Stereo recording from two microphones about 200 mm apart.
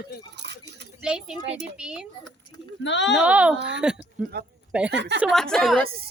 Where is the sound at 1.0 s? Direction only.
5° right (ahead or behind).